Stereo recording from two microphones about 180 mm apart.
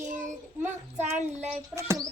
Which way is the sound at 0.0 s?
45° right (ahead or behind).